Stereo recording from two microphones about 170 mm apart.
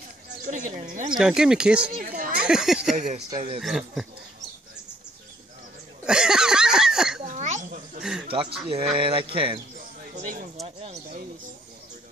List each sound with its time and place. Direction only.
0.5 s speech: 45° right (ahead or behind)
1.1 s speech: 5° right (ahead or behind)
2.0 s children playing: 60° right (ahead or behind)
2.4 s speech: 5° right (ahead or behind)
6.0 s a sound: 5° right (ahead or behind)
7.2 s a sound: 45° right (ahead or behind)
8.0 s speech: 5° right (ahead or behind)
8.3 s speech: 30° right (ahead or behind)
9.8 s a sound: 50° right (ahead or behind)